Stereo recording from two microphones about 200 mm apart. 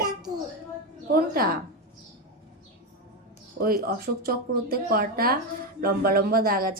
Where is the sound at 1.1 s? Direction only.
45° right (ahead or behind).